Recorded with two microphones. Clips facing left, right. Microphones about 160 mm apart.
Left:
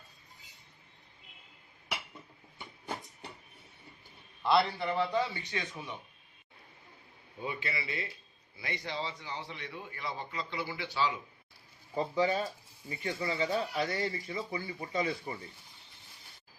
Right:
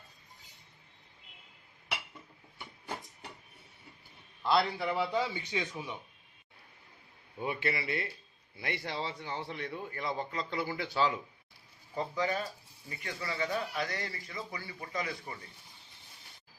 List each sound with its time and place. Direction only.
4.4 s a man's voice: centre (ahead or behind)
7.4 s a man's voice: 55° right (ahead or behind)
11.9 s speech: 25° left (ahead or behind)